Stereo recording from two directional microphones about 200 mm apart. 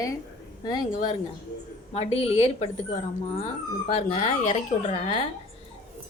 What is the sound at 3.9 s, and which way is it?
A woman's voice, 35° left (ahead or behind).